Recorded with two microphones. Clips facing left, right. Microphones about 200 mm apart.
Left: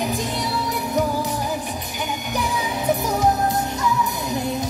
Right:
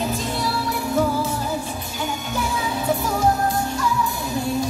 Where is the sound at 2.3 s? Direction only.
15° left (ahead or behind).